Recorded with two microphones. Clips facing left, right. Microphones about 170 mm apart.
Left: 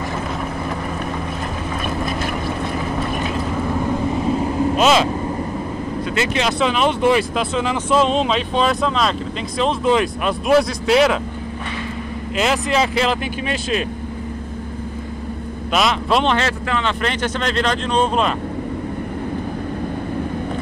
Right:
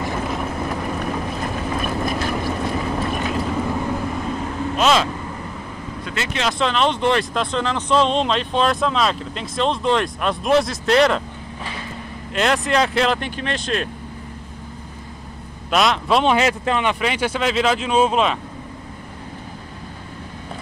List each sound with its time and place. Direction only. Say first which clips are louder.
4.1 s vehicle: left 6 dB; 30° left (ahead or behind)
4.7 s vehicle: left 1 dB; 5° left (ahead or behind)
6.1 s speech: left 3 dB; 5° left (ahead or behind)
12.4 s speech: even; 5° left (ahead or behind)
15.7 s speech: even; centre (ahead or behind)